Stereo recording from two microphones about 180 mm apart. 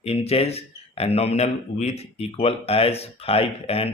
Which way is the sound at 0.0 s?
35° left (ahead or behind).